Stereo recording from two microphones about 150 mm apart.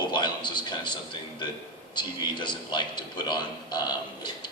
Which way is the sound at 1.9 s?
30° left (ahead or behind).